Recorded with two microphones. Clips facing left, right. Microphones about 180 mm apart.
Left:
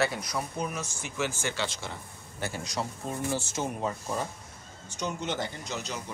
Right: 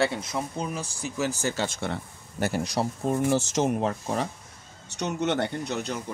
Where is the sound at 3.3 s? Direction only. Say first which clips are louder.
Right 8 dB; 90° right.